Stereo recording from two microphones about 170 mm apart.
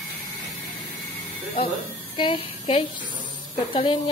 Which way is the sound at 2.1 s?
30° left (ahead or behind).